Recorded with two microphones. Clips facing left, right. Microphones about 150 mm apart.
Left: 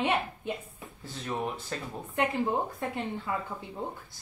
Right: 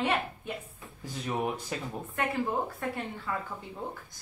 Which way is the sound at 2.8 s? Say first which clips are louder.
Left 2 dB; 20° left (ahead or behind).